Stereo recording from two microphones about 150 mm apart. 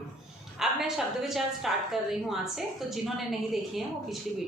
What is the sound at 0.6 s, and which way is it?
Speech, centre (ahead or behind).